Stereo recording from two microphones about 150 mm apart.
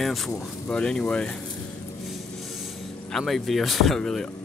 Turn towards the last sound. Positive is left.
turn(degrees=5)  # may be behind; listen again after turning